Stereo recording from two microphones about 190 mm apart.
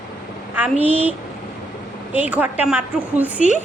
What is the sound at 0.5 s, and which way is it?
Speech, 10° right (ahead or behind).